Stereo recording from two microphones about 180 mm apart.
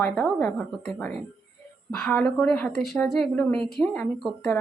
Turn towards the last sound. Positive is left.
turn(degrees=5)  # may be behind; listen again after turning